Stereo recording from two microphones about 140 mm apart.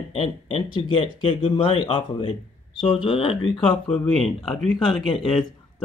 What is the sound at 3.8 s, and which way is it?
Speech, 5° left (ahead or behind).